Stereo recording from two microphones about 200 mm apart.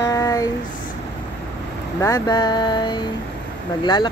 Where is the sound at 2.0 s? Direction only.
20° left (ahead or behind).